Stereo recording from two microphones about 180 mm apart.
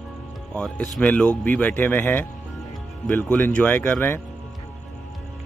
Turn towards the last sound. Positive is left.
turn(degrees=10)  # may be behind; listen again after turning